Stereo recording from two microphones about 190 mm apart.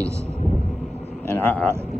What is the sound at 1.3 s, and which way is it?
Speech, 10° left (ahead or behind).